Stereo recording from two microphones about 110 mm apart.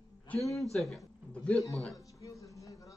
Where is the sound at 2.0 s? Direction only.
30° left (ahead or behind).